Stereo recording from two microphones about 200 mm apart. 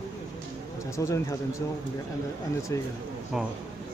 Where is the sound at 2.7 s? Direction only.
15° left (ahead or behind).